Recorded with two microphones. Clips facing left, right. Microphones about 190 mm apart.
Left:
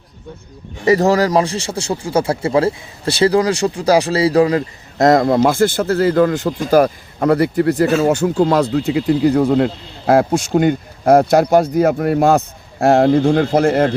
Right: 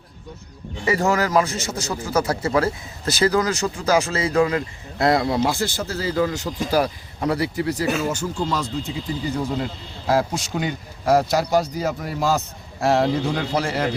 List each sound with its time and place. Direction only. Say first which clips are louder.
0.9 s a man's voice: left 7 dB; 35° left (ahead or behind); by 13.9 s 55° left (ahead or behind)